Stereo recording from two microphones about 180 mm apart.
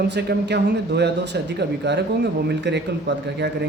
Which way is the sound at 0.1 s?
70° right (ahead or behind).